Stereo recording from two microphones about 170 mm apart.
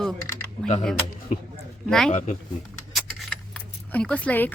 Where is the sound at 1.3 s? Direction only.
45° left (ahead or behind).